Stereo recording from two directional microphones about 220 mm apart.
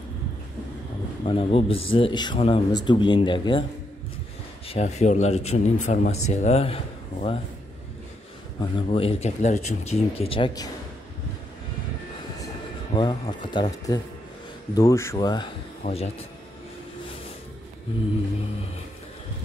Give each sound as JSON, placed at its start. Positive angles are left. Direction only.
{"t": 1.2, "sound": "speech", "side_deg": 25}
{"t": 4.6, "sound": "speech", "side_deg": 30}
{"t": 8.8, "sound": "speech", "side_deg": 25}
{"t": 12.9, "sound": "speech", "side_deg": 20}